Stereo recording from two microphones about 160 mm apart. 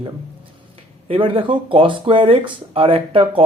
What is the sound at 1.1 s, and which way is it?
Speech, 30° right (ahead or behind).